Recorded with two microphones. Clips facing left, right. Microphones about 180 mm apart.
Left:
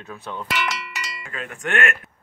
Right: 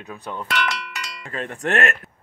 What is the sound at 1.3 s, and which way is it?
Speech, 35° right (ahead or behind).